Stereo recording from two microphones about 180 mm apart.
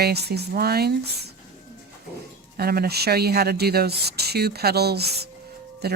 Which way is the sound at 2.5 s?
60° right (ahead or behind).